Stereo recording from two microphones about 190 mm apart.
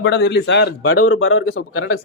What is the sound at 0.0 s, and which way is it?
Speech, 65° left (ahead or behind).